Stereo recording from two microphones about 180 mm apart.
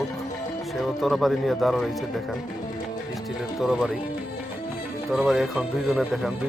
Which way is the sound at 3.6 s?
Centre (ahead or behind).